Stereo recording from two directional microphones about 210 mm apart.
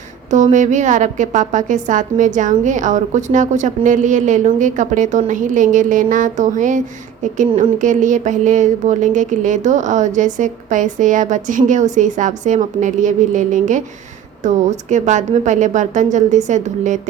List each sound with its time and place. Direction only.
0.3 s a woman's voice: 35° right (ahead or behind)